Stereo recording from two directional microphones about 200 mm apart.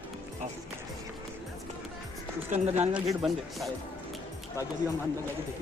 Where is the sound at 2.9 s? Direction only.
Centre (ahead or behind).